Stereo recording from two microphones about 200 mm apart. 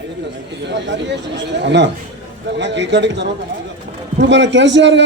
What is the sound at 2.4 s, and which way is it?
A man's voice, 60° right (ahead or behind).